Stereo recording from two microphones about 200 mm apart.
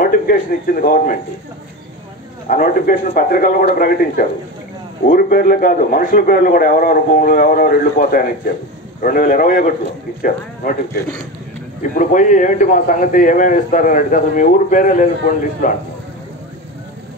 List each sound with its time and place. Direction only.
0.0 s a man's voice: 45° left (ahead or behind)
2.4 s a man's voice: 45° left (ahead or behind)